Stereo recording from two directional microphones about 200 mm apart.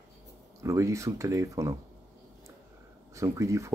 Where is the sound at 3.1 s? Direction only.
15° right (ahead or behind).